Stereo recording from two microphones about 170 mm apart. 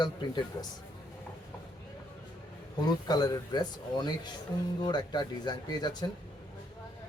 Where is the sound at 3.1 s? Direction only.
25° left (ahead or behind).